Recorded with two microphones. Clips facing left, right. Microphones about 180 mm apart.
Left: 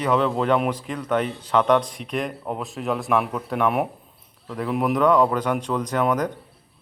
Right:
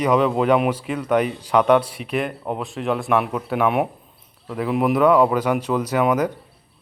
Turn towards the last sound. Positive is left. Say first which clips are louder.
# right 3 dB
turn(degrees=-5)  # may be behind; listen again after turning